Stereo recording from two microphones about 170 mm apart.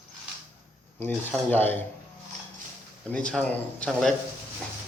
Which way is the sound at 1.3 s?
10° left (ahead or behind).